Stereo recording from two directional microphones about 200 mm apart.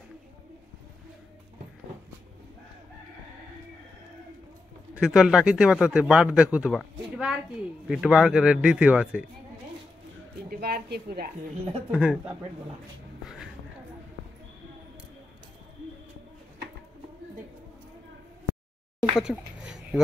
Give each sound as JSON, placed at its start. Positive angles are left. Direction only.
{"t": 4.9, "sound": "speech", "side_deg": -5}
{"t": 10.5, "sound": "a woman's voice", "side_deg": -50}
{"t": 11.9, "sound": "speech", "side_deg": -5}
{"t": 19.1, "sound": "a sound", "side_deg": -5}